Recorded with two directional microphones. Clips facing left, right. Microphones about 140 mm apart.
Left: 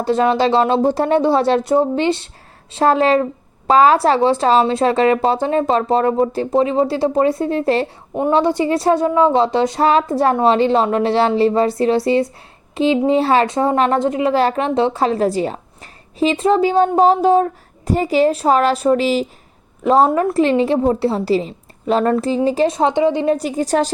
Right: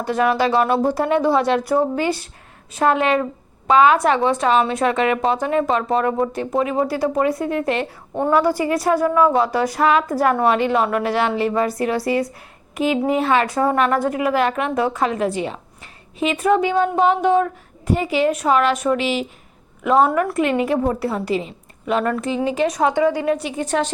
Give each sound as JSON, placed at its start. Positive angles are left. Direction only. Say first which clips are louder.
{"t": 0.0, "sound": "a woman's voice", "louder": "left 3 dB", "side_deg": 25}